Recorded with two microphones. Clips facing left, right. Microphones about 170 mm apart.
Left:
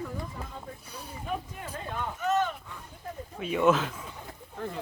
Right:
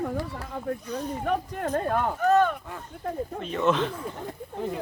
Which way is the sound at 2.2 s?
55° right (ahead or behind).